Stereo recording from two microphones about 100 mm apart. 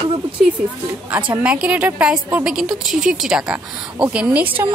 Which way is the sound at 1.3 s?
15° right (ahead or behind).